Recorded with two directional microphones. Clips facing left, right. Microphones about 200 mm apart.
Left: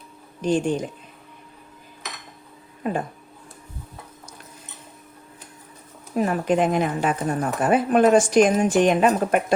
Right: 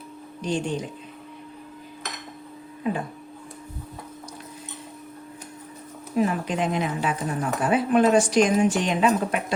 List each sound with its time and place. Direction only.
0.4 s speech: 50° left (ahead or behind)
6.1 s speech: 50° left (ahead or behind)